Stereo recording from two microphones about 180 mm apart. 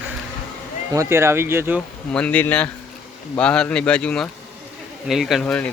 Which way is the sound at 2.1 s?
5° left (ahead or behind).